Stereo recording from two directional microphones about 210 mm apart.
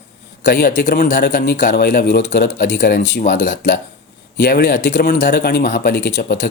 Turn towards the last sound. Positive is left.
turn(degrees=50)  # may be behind; listen again after turning